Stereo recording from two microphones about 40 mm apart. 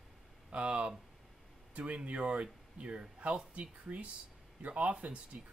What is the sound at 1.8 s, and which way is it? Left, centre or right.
Speech, right.